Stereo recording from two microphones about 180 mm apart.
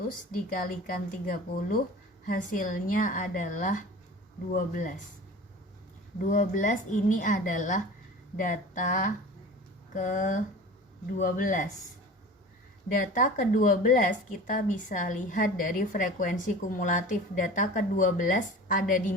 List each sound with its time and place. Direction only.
0.5 s a woman's voice: 55° left (ahead or behind)
6.2 s a woman's voice: 45° left (ahead or behind)
12.9 s a woman's voice: 45° left (ahead or behind)